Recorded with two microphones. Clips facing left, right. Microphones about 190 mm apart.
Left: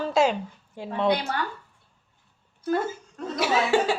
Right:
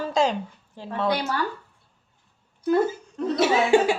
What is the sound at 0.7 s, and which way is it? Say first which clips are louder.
Speech: left 1 dB; 15° left (ahead or behind).